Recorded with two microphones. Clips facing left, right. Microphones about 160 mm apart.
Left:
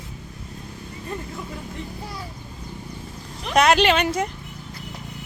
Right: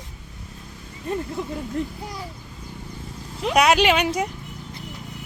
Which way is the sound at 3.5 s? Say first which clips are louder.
Left 1 dB; 5° right (ahead or behind).